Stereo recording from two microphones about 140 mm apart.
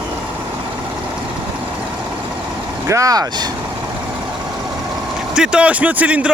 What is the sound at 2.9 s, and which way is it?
Speech, 25° right (ahead or behind).